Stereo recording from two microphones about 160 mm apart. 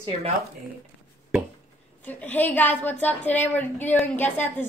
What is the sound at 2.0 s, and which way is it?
Speech, 10° left (ahead or behind).